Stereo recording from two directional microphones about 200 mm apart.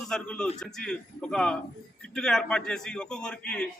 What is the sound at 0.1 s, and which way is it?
A man's voice, 5° left (ahead or behind).